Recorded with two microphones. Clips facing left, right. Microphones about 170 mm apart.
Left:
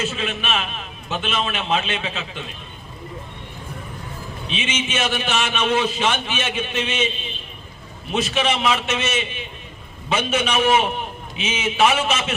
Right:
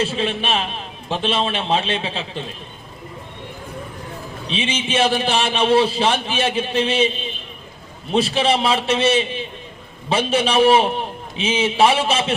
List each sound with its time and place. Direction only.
0.0 s a man's voice: 30° right (ahead or behind)
4.4 s a man's voice: 30° right (ahead or behind)
8.1 s a man's voice: 30° right (ahead or behind)